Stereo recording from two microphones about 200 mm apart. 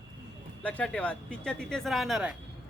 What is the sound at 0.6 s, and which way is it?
Speech, 5° left (ahead or behind).